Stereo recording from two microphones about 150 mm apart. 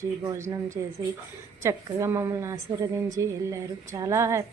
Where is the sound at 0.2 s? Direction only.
20° right (ahead or behind).